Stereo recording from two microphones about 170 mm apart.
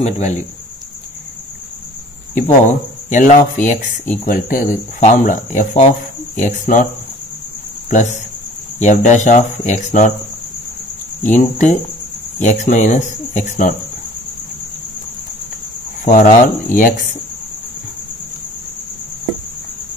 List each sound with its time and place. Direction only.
0.0 s speech: 45° left (ahead or behind)
2.3 s speech: 45° left (ahead or behind)
7.9 s speech: 45° left (ahead or behind)
11.2 s speech: 45° left (ahead or behind)
16.0 s cricket: 50° left (ahead or behind)
16.7 s speech: 50° left (ahead or behind)